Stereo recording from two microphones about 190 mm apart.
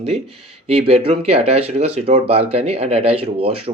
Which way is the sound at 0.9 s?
30° right (ahead or behind).